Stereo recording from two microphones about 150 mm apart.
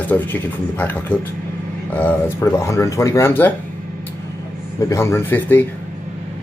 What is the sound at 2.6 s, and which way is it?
Speech, 20° left (ahead or behind).